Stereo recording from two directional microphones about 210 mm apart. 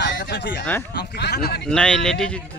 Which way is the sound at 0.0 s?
55° left (ahead or behind).